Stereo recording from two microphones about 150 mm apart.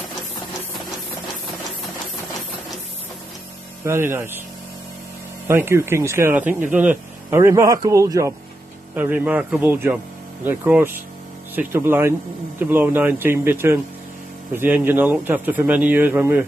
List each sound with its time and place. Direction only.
3.8 s a man's voice: 15° right (ahead or behind)
5.5 s a man's voice: 15° right (ahead or behind)